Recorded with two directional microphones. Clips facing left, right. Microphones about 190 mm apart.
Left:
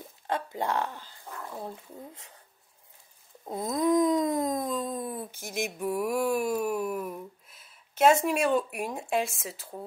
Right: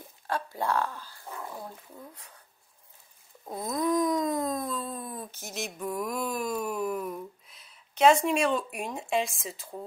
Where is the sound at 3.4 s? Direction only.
20° left (ahead or behind).